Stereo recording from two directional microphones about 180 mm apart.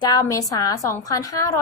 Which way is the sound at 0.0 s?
20° left (ahead or behind).